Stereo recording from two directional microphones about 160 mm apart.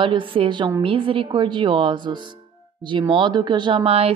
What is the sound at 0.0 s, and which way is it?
A woman's voice, 30° right (ahead or behind).